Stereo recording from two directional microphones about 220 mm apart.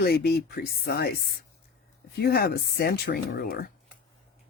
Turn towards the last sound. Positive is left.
turn(degrees=45)  # may be behind; listen again after turning